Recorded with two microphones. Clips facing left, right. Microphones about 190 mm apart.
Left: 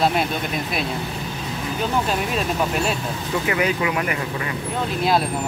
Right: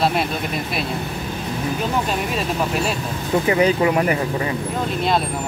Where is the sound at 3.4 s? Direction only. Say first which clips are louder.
Right 5 dB; 30° right (ahead or behind).